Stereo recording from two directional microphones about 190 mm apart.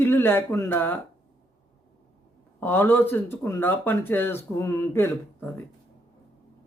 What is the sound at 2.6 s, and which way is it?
Speech, 10° left (ahead or behind).